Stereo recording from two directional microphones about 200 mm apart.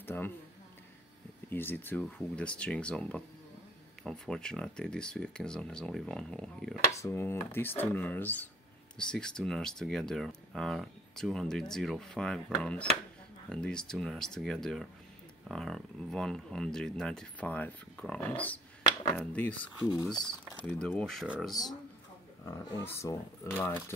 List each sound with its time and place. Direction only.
0.0 s a sound: 10° left (ahead or behind)
1.5 s speech: 10° left (ahead or behind)
6.9 s speech: 15° left (ahead or behind)
22.4 s speech: 15° left (ahead or behind)